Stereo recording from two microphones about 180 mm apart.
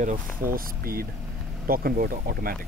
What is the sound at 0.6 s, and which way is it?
Speech, 55° right (ahead or behind).